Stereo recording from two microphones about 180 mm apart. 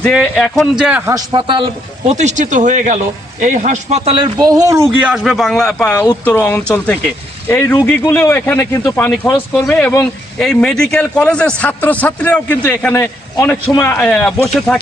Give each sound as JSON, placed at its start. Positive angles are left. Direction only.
{"t": 0.0, "sound": "a man's voice", "side_deg": 5}
{"t": 1.1, "sound": "a man's voice", "side_deg": -25}
{"t": 2.0, "sound": "a man's voice", "side_deg": -40}